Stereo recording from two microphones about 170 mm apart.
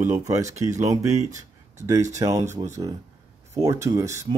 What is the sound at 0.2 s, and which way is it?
Speech, 20° right (ahead or behind).